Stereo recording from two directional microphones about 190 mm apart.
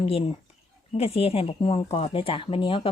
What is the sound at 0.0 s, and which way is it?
Speech, 30° left (ahead or behind).